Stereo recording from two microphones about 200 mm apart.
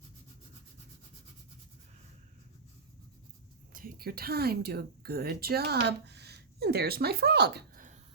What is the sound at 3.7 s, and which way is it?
A woman's voice, 45° right (ahead or behind).